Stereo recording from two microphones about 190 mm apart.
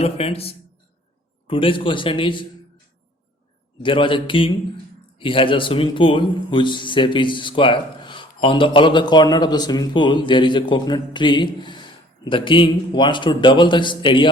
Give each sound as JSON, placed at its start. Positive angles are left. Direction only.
{"t": 0.0, "sound": "a man's voice", "side_deg": 30}
{"t": 3.8, "sound": "a man's voice", "side_deg": 25}